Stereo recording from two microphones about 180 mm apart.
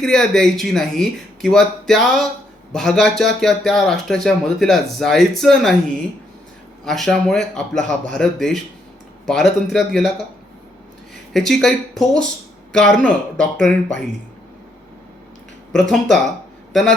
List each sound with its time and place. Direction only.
0.0 s speech: 5° left (ahead or behind)
6.8 s speech: centre (ahead or behind)
11.3 s speech: centre (ahead or behind)
15.7 s speech: 5° left (ahead or behind)